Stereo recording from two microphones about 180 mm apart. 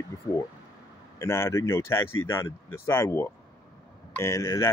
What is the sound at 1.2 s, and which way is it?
Speech, 15° left (ahead or behind).